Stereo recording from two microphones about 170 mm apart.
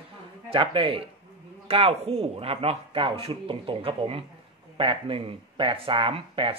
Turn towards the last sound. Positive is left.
turn(degrees=-30)  # may be behind; listen again after turning